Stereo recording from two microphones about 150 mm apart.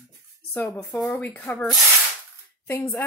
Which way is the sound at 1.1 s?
10° left (ahead or behind).